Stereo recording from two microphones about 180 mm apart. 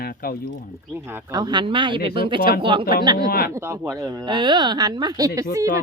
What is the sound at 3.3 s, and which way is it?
Speech, 55° left (ahead or behind).